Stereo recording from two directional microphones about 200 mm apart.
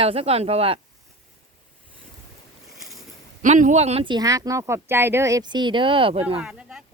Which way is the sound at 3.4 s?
40° right (ahead or behind).